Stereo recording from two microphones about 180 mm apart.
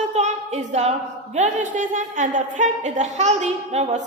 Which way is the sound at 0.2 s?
40° right (ahead or behind).